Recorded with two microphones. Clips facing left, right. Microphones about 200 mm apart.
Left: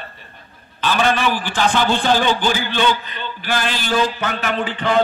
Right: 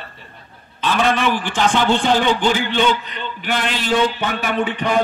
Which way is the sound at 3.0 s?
75° right (ahead or behind).